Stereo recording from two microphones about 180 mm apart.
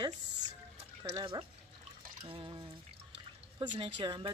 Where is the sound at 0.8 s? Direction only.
30° right (ahead or behind).